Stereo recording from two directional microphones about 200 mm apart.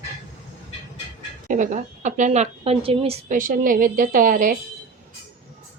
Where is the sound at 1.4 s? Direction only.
40° right (ahead or behind).